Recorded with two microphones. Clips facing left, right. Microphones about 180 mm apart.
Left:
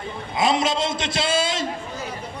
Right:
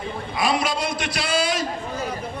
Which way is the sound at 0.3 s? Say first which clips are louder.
Left 2 dB; 20° left (ahead or behind).